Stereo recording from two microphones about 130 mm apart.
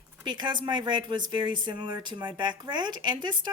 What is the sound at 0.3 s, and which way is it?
Speech, 35° right (ahead or behind).